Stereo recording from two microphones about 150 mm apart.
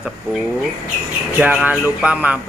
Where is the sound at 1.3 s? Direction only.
10° right (ahead or behind).